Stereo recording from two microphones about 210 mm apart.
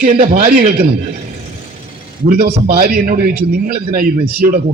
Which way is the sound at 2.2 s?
45° right (ahead or behind).